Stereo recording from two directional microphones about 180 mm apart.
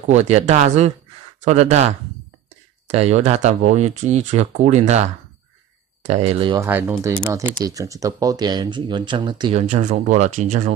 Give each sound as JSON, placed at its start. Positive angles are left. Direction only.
{"t": 0.1, "sound": "speech", "side_deg": -40}
{"t": 2.9, "sound": "speech", "side_deg": -35}
{"t": 6.6, "sound": "speech", "side_deg": -10}
{"t": 9.6, "sound": "speech", "side_deg": -40}